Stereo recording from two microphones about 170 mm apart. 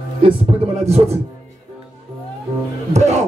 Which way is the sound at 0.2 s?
35° right (ahead or behind).